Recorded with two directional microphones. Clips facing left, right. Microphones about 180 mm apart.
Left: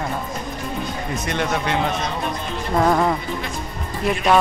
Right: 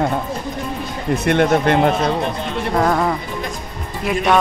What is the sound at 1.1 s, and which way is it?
Speech, 60° right (ahead or behind).